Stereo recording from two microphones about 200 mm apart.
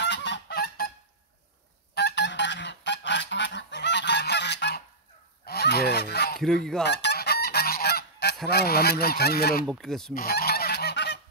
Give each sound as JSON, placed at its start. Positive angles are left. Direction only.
{"t": 0.0, "sound": "goose", "side_deg": 60}
{"t": 2.0, "sound": "goose", "side_deg": 60}
{"t": 6.4, "sound": "speech", "side_deg": 0}
{"t": 6.8, "sound": "goose", "side_deg": 60}
{"t": 8.5, "sound": "speech", "side_deg": 50}
{"t": 9.7, "sound": "speech", "side_deg": 0}
{"t": 10.1, "sound": "goose", "side_deg": 50}